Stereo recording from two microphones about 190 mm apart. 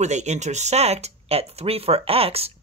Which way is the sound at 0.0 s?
35° right (ahead or behind).